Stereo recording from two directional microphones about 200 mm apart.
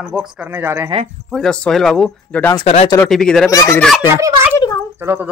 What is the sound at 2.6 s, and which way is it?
Speech, 25° left (ahead or behind).